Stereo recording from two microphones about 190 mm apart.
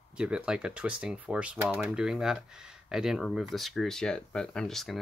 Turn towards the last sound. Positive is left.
turn(degrees=0)  # may be behind; listen again after turning